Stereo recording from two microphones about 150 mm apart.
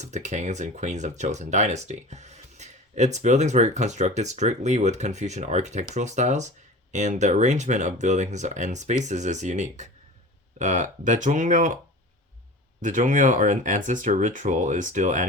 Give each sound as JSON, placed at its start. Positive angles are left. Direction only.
{"t": 0.0, "sound": "speech", "side_deg": -50}
{"t": 12.8, "sound": "speech", "side_deg": -60}